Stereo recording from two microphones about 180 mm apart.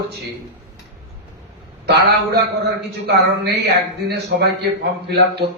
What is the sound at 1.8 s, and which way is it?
A man's voice, 65° right (ahead or behind).